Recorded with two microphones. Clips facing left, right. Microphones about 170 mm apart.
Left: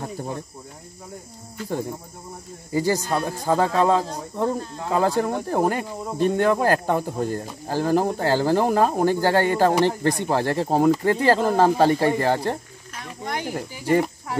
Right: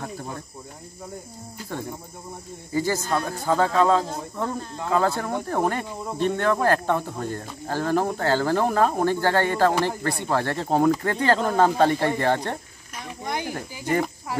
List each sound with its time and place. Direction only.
2.7 s speech: 15° left (ahead or behind)
13.2 s a sound: 15° right (ahead or behind)
13.5 s speech: 10° left (ahead or behind)